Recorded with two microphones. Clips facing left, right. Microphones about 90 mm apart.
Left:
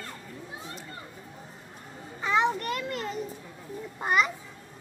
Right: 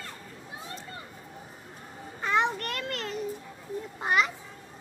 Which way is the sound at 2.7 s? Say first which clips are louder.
Left 3 dB; 10° left (ahead or behind).